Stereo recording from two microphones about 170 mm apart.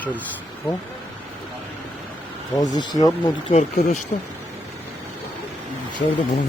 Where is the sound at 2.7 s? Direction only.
25° left (ahead or behind).